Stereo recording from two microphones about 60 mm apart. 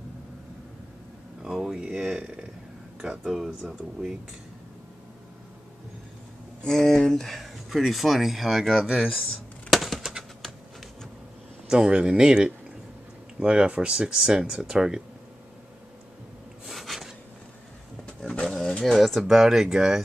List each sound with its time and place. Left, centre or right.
1.4 s a sound: centre
3.0 s speech: centre
6.6 s speech: centre
9.7 s bird: centre
11.6 s speech: centre
16.6 s a sound: centre
18.0 s roaring cats: centre
18.9 s speech: centre